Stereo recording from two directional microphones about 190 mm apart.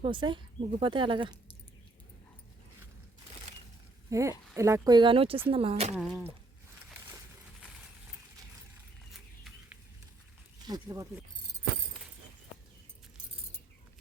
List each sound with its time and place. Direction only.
0.0 s speech: 25° right (ahead or behind)
4.1 s speech: 15° right (ahead or behind); by 5.9 s 30° right (ahead or behind)
5.9 s speech: 5° right (ahead or behind)
9.1 s a sound: centre (ahead or behind)
10.7 s speech: 15° right (ahead or behind)